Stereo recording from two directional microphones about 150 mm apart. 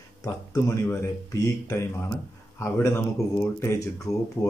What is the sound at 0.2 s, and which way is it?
Speech, 20° left (ahead or behind).